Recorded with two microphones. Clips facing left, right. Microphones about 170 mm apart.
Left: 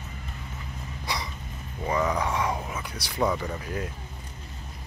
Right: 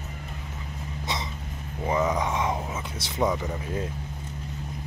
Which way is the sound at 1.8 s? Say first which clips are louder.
Right 1 dB; 20° right (ahead or behind).